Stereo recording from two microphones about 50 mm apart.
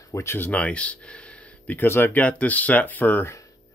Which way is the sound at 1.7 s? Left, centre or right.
Left.